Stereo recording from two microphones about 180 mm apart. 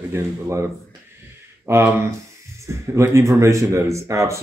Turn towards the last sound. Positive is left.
turn(degrees=-15)  # may be behind; listen again after turning